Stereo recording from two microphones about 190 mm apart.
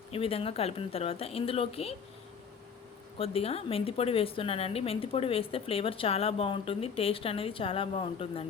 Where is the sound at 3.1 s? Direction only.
30° left (ahead or behind).